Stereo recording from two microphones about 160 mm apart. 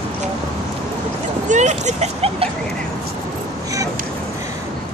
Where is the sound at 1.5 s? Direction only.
45° right (ahead or behind).